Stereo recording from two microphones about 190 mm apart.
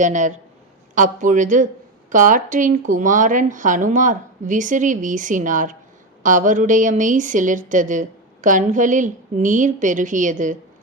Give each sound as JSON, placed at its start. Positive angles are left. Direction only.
{"t": 0.0, "sound": "speech", "side_deg": -40}